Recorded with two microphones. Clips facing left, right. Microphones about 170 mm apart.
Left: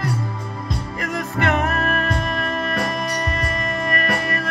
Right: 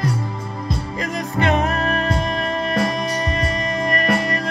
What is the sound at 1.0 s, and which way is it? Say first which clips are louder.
Music: right 1 dB; 20° right (ahead or behind).